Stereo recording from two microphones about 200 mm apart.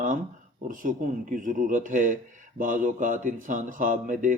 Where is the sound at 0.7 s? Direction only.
40° right (ahead or behind).